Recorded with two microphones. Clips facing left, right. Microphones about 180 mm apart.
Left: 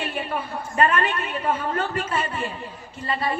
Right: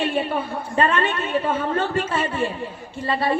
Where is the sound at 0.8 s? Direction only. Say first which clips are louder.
Right 1 dB; 25° right (ahead or behind).